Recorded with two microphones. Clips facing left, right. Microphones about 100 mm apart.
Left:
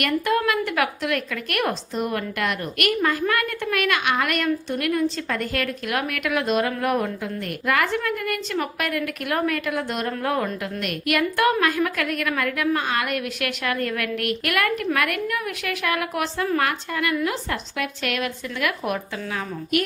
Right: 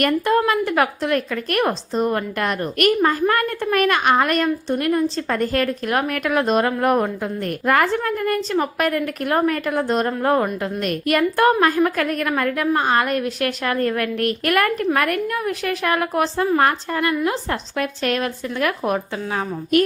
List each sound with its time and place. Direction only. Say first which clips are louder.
0.0 s a woman's voice: right 4 dB; 35° right (ahead or behind)